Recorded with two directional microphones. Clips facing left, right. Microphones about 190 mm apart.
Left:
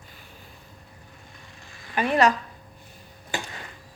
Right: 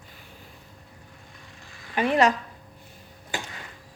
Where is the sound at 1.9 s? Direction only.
20° right (ahead or behind).